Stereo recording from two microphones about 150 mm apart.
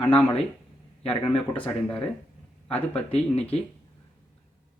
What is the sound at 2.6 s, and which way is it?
Speech, 40° left (ahead or behind).